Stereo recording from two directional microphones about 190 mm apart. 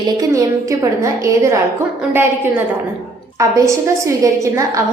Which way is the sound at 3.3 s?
15° right (ahead or behind).